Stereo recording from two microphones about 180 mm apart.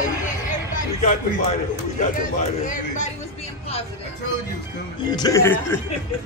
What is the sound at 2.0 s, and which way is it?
A man's voice, 45° left (ahead or behind).